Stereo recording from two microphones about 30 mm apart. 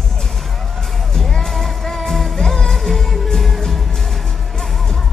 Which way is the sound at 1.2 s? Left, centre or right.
Centre.